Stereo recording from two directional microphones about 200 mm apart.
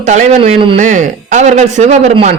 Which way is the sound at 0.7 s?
40° right (ahead or behind).